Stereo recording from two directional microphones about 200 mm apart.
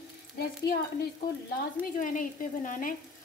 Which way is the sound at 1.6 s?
40° left (ahead or behind).